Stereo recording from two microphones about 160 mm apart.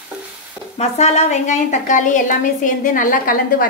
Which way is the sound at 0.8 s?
45° left (ahead or behind).